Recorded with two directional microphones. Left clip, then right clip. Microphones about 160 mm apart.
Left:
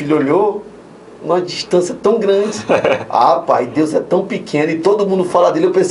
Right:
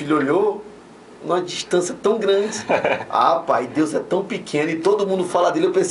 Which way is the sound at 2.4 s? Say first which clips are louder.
Left 6 dB; centre (ahead or behind).